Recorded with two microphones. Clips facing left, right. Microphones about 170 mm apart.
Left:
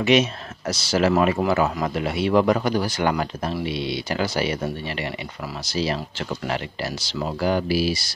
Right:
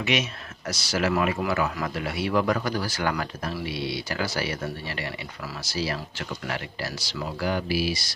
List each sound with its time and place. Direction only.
0.0 s speech: 30° left (ahead or behind)